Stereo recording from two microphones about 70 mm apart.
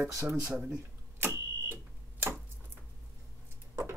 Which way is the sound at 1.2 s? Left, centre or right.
Right.